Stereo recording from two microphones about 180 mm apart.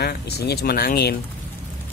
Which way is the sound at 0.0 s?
65° left (ahead or behind).